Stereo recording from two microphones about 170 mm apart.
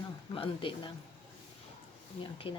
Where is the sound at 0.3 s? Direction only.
30° left (ahead or behind).